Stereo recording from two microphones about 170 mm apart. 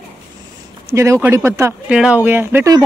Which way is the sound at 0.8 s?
15° right (ahead or behind).